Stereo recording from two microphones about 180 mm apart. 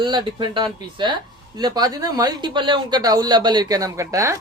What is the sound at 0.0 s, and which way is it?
Speech, 25° right (ahead or behind).